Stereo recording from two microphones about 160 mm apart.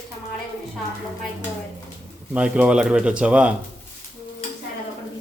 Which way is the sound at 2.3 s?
10° right (ahead or behind).